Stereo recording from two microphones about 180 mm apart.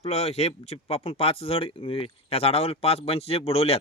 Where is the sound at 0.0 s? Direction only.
35° left (ahead or behind).